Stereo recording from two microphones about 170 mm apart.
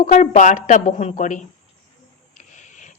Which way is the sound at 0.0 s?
45° left (ahead or behind).